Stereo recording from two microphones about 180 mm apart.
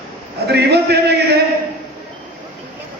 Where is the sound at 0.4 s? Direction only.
65° right (ahead or behind).